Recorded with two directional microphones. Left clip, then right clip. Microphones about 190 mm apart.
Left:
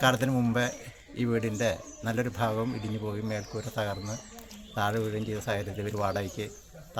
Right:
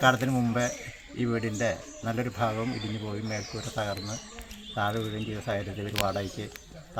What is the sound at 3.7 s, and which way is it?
Speech, 25° left (ahead or behind).